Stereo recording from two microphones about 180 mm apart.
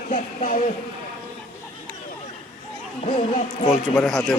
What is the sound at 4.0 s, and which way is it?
Speech, centre (ahead or behind).